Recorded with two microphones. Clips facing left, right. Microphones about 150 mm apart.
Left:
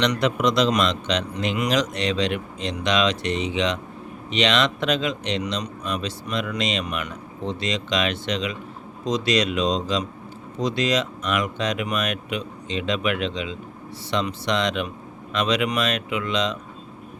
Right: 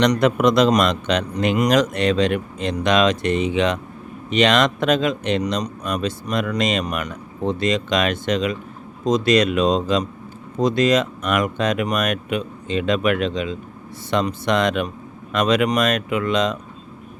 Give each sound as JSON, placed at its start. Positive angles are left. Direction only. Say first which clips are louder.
{"t": 0.0, "sound": "speech", "louder": "right 5 dB", "side_deg": -50}